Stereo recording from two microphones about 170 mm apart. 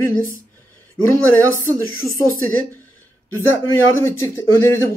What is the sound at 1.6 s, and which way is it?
Speech, 15° left (ahead or behind).